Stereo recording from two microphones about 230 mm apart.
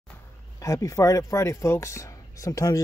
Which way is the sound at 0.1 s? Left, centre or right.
Centre.